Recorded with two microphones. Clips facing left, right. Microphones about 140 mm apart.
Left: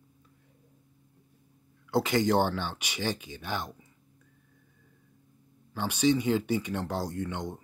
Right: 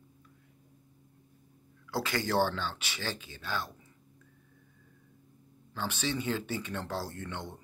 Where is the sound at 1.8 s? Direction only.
20° left (ahead or behind).